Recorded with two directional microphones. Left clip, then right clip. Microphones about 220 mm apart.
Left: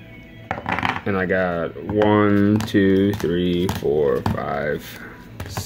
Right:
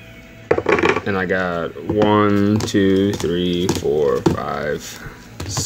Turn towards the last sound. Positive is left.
turn(degrees=0)  # may be behind; listen again after turning